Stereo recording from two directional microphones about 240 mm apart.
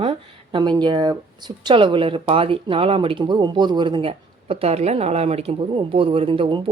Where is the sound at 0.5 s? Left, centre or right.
Centre.